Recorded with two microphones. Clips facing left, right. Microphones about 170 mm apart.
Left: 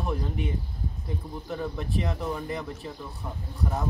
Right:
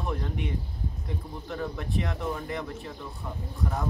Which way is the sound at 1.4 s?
Centre (ahead or behind).